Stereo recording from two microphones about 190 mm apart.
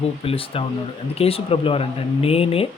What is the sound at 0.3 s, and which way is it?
Speech, 30° left (ahead or behind).